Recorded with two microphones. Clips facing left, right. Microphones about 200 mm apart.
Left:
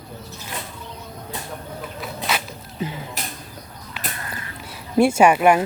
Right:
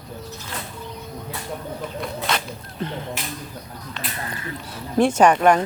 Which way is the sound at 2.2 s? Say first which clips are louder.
Right 1 dB; 5° left (ahead or behind).